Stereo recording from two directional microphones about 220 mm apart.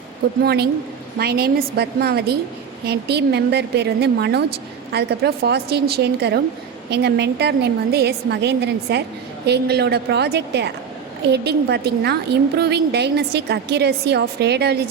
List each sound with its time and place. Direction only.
0.4 s a woman's voice: 45° right (ahead or behind)